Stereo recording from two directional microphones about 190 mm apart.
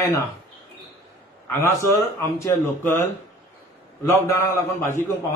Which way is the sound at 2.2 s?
15° left (ahead or behind).